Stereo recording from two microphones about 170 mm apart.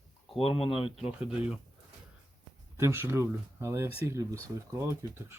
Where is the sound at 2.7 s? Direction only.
15° right (ahead or behind).